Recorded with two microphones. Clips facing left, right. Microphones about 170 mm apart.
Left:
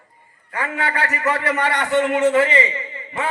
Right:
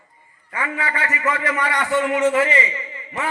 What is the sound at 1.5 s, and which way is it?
Speech, 65° left (ahead or behind).